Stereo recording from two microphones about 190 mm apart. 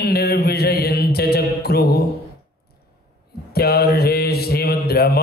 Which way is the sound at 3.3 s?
55° left (ahead or behind).